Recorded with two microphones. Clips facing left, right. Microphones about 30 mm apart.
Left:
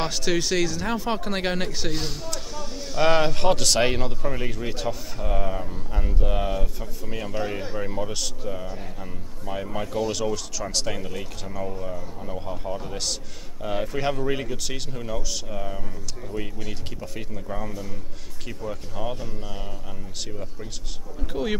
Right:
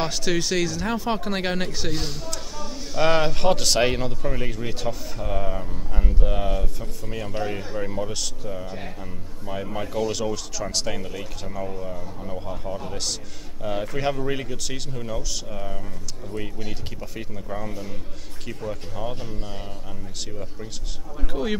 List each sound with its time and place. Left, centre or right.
0.0 s speech: centre
21.3 s speech: centre